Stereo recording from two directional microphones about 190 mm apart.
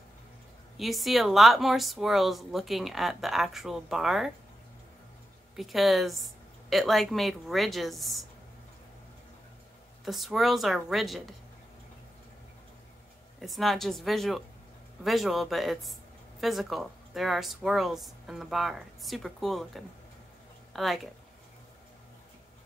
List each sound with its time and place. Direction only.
0.7 s speech: centre (ahead or behind)
5.6 s speech: centre (ahead or behind)
10.0 s speech: centre (ahead or behind)
13.4 s speech: centre (ahead or behind)